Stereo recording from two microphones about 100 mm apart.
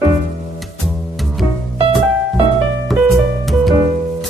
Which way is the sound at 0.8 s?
Centre (ahead or behind).